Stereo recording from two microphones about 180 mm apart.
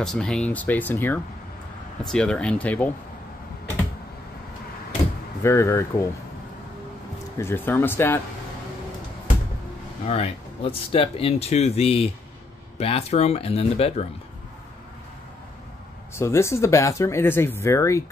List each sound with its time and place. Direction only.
0.0 s speech: centre (ahead or behind)
5.4 s speech: 15° left (ahead or behind)
7.3 s speech: 10° left (ahead or behind)
10.0 s speech: 35° left (ahead or behind)
16.2 s speech: 15° left (ahead or behind)